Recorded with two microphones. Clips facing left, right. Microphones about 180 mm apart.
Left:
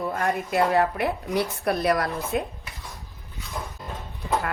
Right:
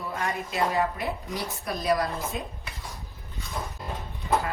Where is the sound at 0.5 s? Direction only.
65° left (ahead or behind).